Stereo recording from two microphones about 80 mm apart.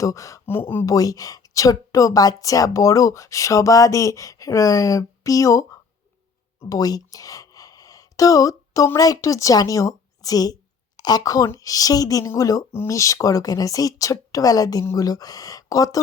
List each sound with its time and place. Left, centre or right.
0.0 s speech: left
0.4 s speech: left
0.9 s a woman's voice: left
6.7 s a sound: left
9.0 s a woman's voice: left